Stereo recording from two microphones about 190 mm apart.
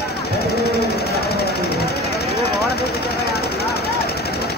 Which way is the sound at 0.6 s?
55° left (ahead or behind).